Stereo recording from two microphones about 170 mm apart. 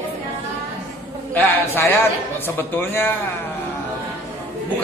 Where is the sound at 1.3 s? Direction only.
15° left (ahead or behind).